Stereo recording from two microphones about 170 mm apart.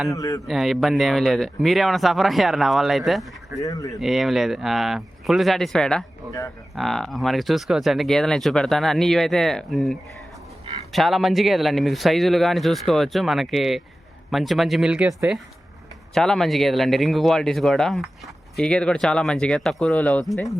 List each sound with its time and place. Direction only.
0.1 s a man's voice: 20° left (ahead or behind)
0.4 s speech: centre (ahead or behind)
3.6 s a man's voice: 20° left (ahead or behind)
4.0 s speech: centre (ahead or behind)